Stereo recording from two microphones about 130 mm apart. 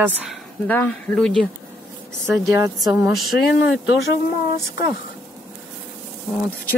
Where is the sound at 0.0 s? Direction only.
10° right (ahead or behind).